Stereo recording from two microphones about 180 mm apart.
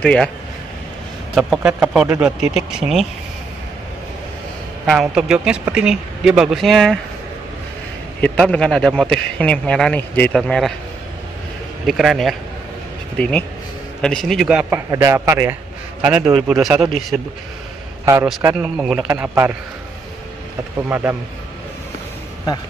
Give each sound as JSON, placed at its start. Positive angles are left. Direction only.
{"t": 0.0, "sound": "a man's voice", "side_deg": 5}
{"t": 1.3, "sound": "a man's voice", "side_deg": -5}
{"t": 4.8, "sound": "a man's voice", "side_deg": -5}
{"t": 8.2, "sound": "a man's voice", "side_deg": 5}
{"t": 11.8, "sound": "a man's voice", "side_deg": 0}
{"t": 14.9, "sound": "a man's voice", "side_deg": -15}
{"t": 18.1, "sound": "speech", "side_deg": -15}
{"t": 18.6, "sound": "speech", "side_deg": -5}
{"t": 20.9, "sound": "speech", "side_deg": -10}